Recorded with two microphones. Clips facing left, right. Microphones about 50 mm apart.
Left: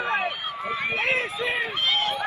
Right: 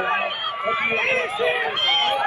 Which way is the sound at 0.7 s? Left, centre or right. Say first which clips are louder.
Right 4 dB; right.